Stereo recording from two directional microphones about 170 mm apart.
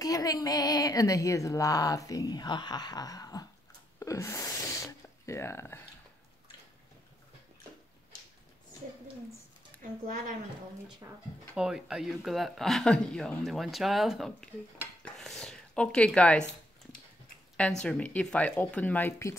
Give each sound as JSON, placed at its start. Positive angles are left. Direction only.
{"t": 0.0, "sound": "speech", "side_deg": 20}
{"t": 4.0, "sound": "a sound", "side_deg": 20}
{"t": 9.8, "sound": "speech", "side_deg": -55}
{"t": 11.5, "sound": "speech", "side_deg": -5}
{"t": 17.8, "sound": "speech", "side_deg": 5}